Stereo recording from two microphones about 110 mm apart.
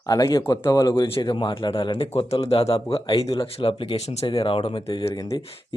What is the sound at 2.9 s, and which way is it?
Speech, 35° left (ahead or behind).